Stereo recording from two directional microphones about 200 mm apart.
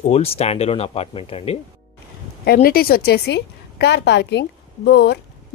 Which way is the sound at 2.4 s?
50° left (ahead or behind).